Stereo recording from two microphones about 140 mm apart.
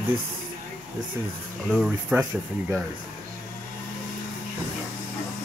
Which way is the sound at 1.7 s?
5° right (ahead or behind).